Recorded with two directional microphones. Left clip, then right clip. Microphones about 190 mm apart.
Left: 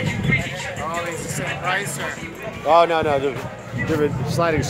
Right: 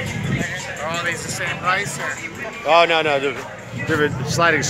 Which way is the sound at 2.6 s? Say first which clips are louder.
Right 1 dB; 5° left (ahead or behind).